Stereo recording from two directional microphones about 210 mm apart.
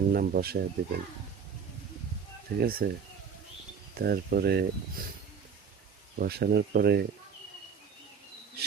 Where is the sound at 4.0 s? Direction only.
45° right (ahead or behind).